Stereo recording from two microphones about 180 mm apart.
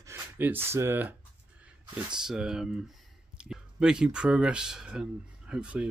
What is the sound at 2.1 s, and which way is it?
Speech, 5° right (ahead or behind).